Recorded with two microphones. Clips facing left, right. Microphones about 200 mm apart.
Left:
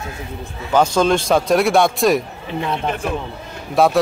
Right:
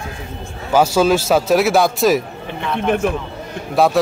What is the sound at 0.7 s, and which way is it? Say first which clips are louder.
A man's voice: right 1 dB; 5° right (ahead or behind).